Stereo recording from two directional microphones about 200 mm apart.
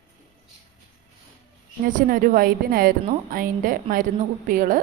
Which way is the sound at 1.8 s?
45° right (ahead or behind).